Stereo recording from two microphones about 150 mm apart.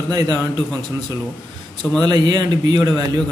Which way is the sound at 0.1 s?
25° right (ahead or behind).